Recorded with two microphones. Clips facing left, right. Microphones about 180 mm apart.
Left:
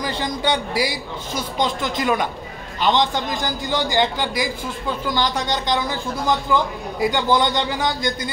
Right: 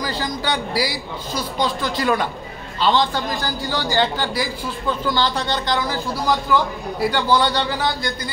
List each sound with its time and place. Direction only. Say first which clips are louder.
0.0 s a man's voice: left 1 dB; 20° left (ahead or behind)